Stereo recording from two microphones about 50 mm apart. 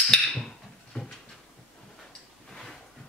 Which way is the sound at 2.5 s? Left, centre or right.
Centre.